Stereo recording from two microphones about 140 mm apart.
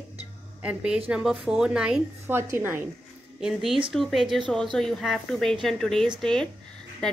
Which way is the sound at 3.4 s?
Centre (ahead or behind).